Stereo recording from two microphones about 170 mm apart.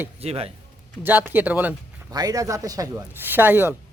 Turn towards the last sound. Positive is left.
turn(degrees=-10)  # may be behind; listen again after turning